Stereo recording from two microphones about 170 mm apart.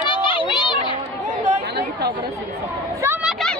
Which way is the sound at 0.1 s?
30° left (ahead or behind).